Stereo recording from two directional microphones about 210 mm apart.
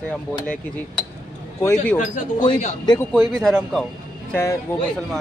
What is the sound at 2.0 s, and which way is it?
Speech, 40° left (ahead or behind).